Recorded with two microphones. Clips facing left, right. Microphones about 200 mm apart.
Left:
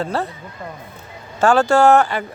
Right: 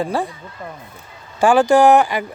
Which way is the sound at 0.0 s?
15° right (ahead or behind).